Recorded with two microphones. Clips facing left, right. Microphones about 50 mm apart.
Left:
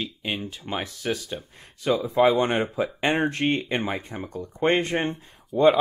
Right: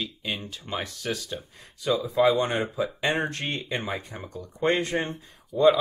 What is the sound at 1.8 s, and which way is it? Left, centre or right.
Speech, left.